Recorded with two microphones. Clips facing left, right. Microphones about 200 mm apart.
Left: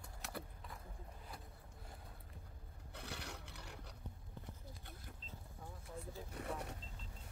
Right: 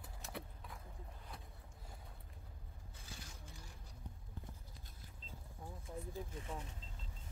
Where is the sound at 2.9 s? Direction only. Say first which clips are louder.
Left 8 dB; 65° left (ahead or behind).